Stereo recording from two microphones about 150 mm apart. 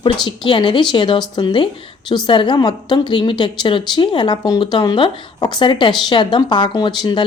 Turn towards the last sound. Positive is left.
turn(degrees=30)  # may be behind; listen again after turning